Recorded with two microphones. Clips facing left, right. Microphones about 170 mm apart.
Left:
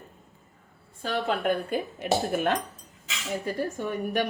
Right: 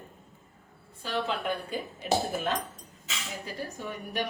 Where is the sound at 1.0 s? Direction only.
50° left (ahead or behind); by 2.5 s 65° left (ahead or behind).